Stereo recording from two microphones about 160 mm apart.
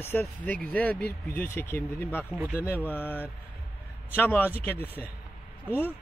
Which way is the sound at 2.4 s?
10° right (ahead or behind).